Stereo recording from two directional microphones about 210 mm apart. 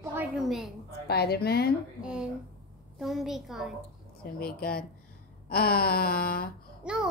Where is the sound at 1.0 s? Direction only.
50° left (ahead or behind).